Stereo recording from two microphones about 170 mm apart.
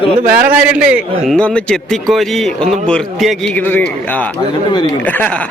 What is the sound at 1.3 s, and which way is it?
A man's voice, 5° left (ahead or behind).